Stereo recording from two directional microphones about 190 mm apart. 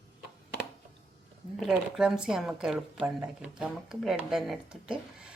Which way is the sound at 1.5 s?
5° right (ahead or behind).